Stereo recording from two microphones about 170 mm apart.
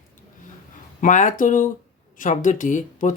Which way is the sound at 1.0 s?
45° left (ahead or behind).